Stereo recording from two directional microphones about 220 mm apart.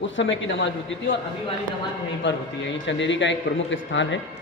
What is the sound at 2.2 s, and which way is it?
A man's voice, 55° left (ahead or behind).